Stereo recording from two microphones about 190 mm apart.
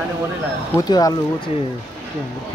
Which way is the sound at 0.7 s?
20° left (ahead or behind).